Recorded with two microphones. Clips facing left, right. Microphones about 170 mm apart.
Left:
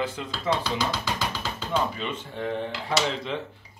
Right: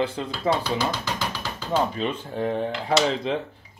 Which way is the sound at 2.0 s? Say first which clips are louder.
Right 5 dB; 40° right (ahead or behind).